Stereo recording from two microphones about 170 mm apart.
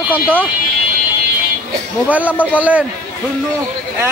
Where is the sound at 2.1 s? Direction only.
10° right (ahead or behind).